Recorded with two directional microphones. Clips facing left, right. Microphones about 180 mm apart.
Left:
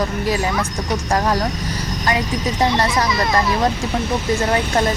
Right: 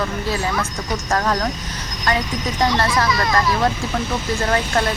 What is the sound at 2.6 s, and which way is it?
Speech, 20° left (ahead or behind).